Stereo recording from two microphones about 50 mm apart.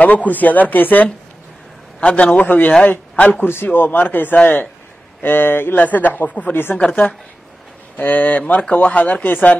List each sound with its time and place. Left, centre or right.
0.0 s speech: left
2.0 s a man's voice: left
2.3 s speech: left
5.9 s speech: left
6.5 s speech: left
6.9 s speech: left